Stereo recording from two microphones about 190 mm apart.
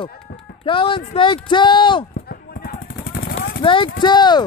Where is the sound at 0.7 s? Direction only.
25° left (ahead or behind).